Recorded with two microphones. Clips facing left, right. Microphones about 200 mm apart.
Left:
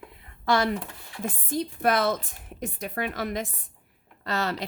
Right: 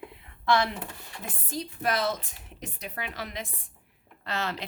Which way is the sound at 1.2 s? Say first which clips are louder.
Left 7 dB; 55° left (ahead or behind).